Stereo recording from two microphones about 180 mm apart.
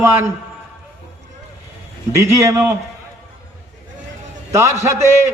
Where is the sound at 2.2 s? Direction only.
15° right (ahead or behind).